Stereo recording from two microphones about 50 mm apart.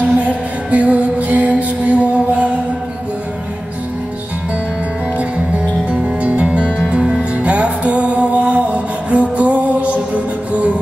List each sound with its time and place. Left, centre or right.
0.0 s music: right
5.9 s music: right
7.3 s music: right